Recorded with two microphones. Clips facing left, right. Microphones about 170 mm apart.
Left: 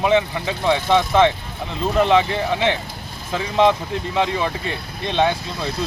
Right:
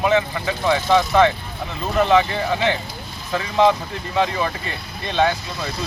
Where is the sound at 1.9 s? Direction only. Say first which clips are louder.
Even; 20° left (ahead or behind).